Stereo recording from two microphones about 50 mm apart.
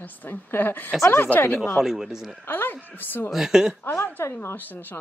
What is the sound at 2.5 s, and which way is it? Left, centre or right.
Speech, left.